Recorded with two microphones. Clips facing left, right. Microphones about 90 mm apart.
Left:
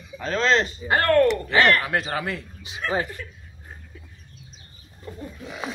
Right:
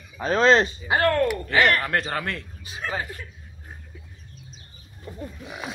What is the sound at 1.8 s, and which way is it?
Speech, 5° left (ahead or behind).